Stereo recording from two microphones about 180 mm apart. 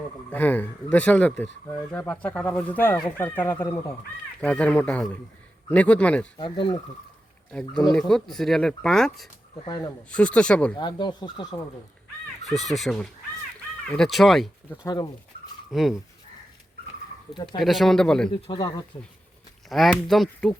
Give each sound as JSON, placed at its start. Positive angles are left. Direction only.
{"t": 0.3, "sound": "speech", "side_deg": 10}
{"t": 6.4, "sound": "speech", "side_deg": 25}
{"t": 7.9, "sound": "speech", "side_deg": 5}
{"t": 9.6, "sound": "speech", "side_deg": 20}
{"t": 10.1, "sound": "speech", "side_deg": 5}
{"t": 10.8, "sound": "speech", "side_deg": 25}
{"t": 12.5, "sound": "speech", "side_deg": 0}
{"t": 17.3, "sound": "speech", "side_deg": 25}
{"t": 17.6, "sound": "speech", "side_deg": 0}
{"t": 18.3, "sound": "speech", "side_deg": 30}
{"t": 19.7, "sound": "speech", "side_deg": 0}